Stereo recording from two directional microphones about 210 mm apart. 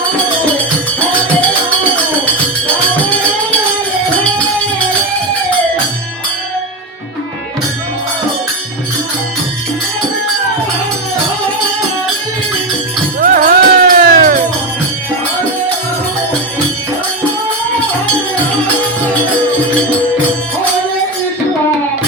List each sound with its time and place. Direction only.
13.1 s music: 40° right (ahead or behind)